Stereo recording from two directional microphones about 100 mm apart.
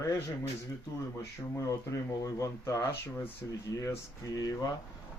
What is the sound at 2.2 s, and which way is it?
Speech, 35° left (ahead or behind).